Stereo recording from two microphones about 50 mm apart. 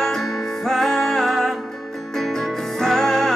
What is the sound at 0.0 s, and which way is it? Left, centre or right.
Music, centre.